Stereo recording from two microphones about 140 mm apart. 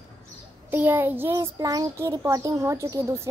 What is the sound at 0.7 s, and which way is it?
Speech, 15° right (ahead or behind).